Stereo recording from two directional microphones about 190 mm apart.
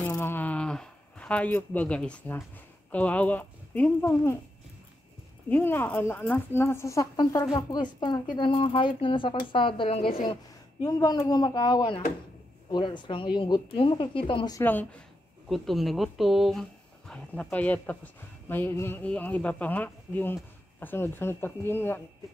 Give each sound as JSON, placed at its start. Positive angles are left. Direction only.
{"t": 0.0, "sound": "a sound", "side_deg": 10}
{"t": 5.5, "sound": "speech", "side_deg": 10}
{"t": 14.6, "sound": "speech", "side_deg": 10}